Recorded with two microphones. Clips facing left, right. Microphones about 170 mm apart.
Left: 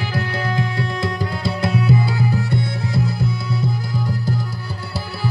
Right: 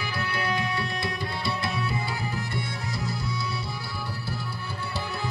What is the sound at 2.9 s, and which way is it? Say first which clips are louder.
Music: left 10 dB; 60° left (ahead or behind).